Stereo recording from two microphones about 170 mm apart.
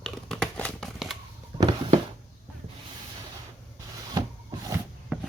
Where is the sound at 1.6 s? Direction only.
30° right (ahead or behind).